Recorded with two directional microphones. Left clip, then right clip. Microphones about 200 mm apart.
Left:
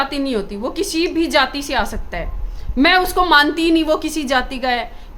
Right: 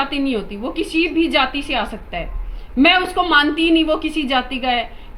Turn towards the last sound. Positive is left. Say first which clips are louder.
# left 1 dB
turn(degrees=20)  # may be behind; listen again after turning